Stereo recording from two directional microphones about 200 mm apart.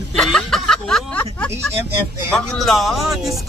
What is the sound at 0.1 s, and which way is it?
Snicker, 5° left (ahead or behind).